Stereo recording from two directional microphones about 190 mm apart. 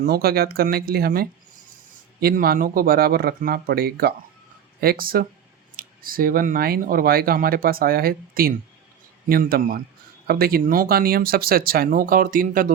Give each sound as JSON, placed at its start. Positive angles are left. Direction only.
{"t": 0.0, "sound": "speech", "side_deg": -55}